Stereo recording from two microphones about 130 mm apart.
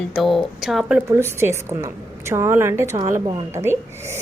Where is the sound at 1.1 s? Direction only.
20° right (ahead or behind).